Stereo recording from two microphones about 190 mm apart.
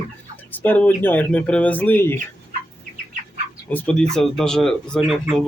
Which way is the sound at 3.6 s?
5° left (ahead or behind).